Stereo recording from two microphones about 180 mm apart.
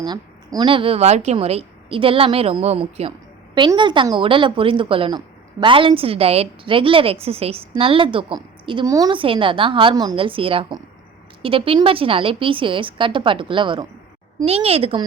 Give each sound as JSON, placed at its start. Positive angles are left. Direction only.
{"t": 0.0, "sound": "a woman's voice", "side_deg": -25}